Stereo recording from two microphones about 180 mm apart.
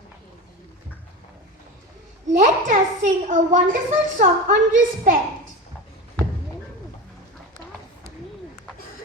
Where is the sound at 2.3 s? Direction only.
40° right (ahead or behind).